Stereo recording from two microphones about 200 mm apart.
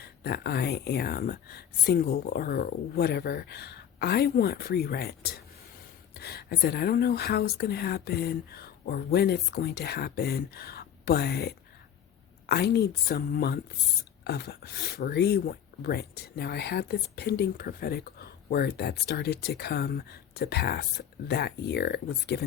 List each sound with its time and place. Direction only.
0.0 s speech: 50° left (ahead or behind)